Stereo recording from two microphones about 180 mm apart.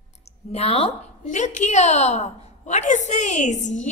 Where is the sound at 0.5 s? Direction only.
35° left (ahead or behind).